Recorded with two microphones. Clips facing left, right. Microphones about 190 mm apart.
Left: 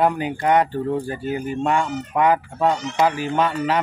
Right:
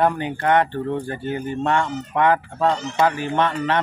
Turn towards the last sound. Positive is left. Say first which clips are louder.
# even
turn(degrees=10)  # may be behind; listen again after turning